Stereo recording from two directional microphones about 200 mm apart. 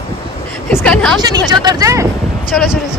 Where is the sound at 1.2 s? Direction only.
20° right (ahead or behind).